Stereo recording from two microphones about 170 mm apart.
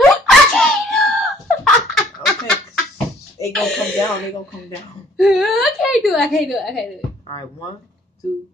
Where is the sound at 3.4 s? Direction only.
20° left (ahead or behind).